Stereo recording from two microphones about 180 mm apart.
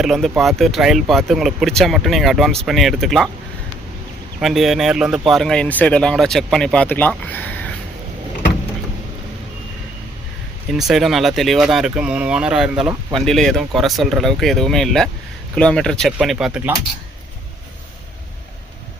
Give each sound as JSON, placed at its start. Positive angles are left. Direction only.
{"t": 0.0, "sound": "speech", "side_deg": 0}
{"t": 4.4, "sound": "speech", "side_deg": 0}
{"t": 10.7, "sound": "speech", "side_deg": 0}